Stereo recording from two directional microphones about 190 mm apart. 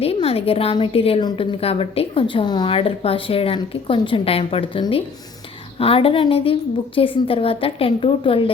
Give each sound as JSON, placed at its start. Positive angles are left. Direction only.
{"t": 0.0, "sound": "a woman's voice", "side_deg": 30}